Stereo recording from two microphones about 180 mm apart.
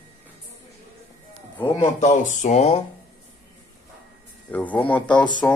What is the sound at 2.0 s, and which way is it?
Speech, 40° left (ahead or behind).